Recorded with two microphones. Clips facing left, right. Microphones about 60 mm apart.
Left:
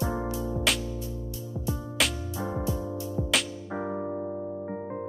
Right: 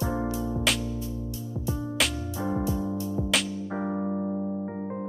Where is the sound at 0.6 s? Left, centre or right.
Centre.